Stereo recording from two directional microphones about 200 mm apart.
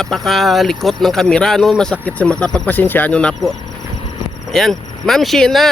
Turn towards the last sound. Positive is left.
turn(degrees=0)  # may be behind; listen again after turning